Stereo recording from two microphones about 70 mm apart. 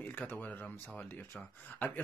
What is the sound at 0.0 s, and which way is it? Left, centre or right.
Speech, left.